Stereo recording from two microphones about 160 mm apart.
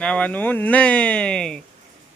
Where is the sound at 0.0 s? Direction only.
10° left (ahead or behind).